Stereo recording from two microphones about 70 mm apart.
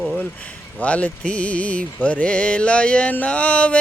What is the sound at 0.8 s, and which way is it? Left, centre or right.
Mantra, centre.